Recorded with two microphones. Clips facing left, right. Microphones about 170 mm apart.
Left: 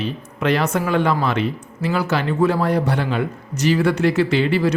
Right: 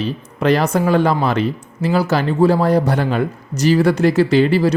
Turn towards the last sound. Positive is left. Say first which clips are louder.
# right 4 dB
turn(degrees=-35)  # may be behind; listen again after turning